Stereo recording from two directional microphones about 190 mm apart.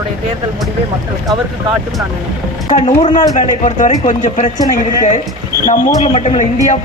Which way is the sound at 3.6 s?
40° left (ahead or behind).